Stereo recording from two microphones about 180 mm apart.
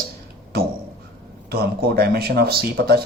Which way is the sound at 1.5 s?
60° right (ahead or behind).